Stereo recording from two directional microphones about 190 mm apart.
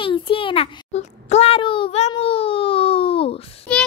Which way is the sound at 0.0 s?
25° left (ahead or behind).